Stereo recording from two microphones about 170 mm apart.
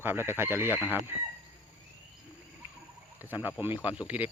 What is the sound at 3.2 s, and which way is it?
Speech, 10° right (ahead or behind).